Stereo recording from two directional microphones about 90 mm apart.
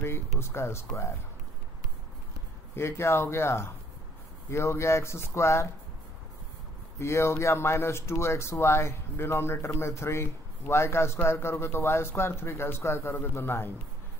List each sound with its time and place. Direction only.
0.0 s speech: 30° left (ahead or behind)
2.7 s speech: 30° left (ahead or behind)
7.0 s speech: 30° left (ahead or behind)